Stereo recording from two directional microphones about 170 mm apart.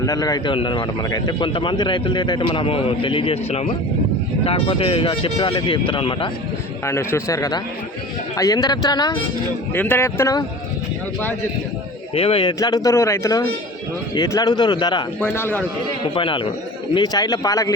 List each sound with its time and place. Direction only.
0.0 s speech: 20° left (ahead or behind)
6.8 s a man's voice: 15° left (ahead or behind)
9.7 s a man's voice: 10° left (ahead or behind)
12.1 s speech: 35° left (ahead or behind)
15.2 s a man's voice: 10° left (ahead or behind)
16.0 s speech: 30° left (ahead or behind)